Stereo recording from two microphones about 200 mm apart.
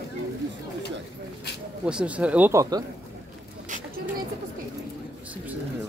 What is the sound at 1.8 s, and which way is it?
Speech, 5° right (ahead or behind).